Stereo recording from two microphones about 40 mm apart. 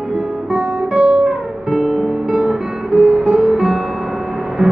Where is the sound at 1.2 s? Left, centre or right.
Right.